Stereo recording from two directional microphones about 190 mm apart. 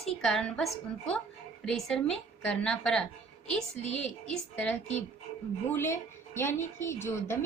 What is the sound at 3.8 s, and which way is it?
Speech, 35° left (ahead or behind).